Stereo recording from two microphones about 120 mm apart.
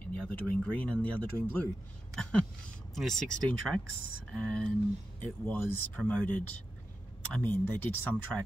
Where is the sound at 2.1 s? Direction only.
5° left (ahead or behind).